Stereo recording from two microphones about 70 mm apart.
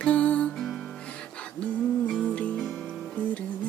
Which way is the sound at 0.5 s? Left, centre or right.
Centre.